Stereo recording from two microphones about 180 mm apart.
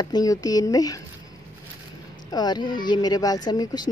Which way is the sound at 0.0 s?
20° left (ahead or behind).